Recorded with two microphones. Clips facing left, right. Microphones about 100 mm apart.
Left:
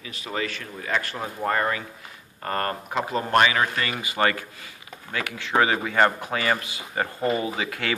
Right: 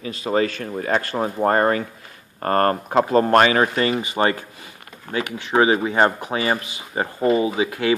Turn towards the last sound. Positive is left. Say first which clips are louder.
# right 8 dB
turn(degrees=-20)  # may be behind; listen again after turning